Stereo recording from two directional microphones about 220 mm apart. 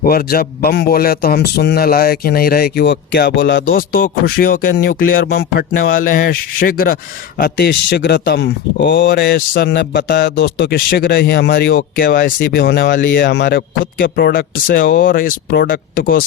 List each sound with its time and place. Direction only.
0.0 s speech: 45° left (ahead or behind)